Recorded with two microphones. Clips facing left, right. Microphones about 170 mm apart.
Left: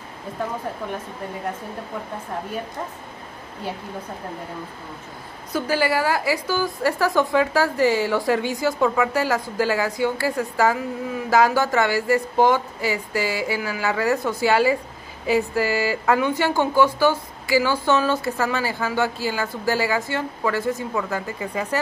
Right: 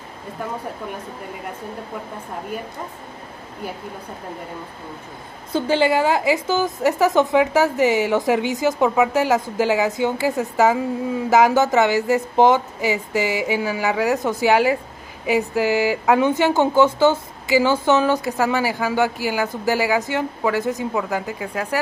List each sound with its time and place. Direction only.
5.5 s a woman's voice: 25° right (ahead or behind)
21.4 s speech: 5° right (ahead or behind)